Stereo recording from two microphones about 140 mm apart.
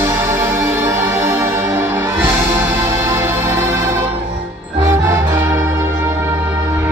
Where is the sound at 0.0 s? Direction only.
20° right (ahead or behind).